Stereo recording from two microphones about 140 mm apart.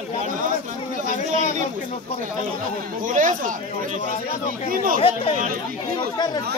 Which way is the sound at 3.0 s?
65° right (ahead or behind).